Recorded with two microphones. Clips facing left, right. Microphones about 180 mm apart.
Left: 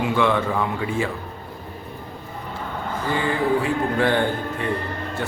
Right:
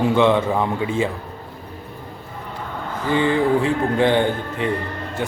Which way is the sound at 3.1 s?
20° right (ahead or behind).